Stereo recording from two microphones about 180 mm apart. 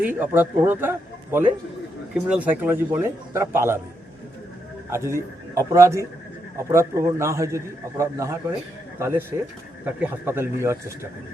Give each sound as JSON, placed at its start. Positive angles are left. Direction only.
{"t": 0.2, "sound": "a man's voice", "side_deg": -10}
{"t": 4.9, "sound": "a man's voice", "side_deg": -15}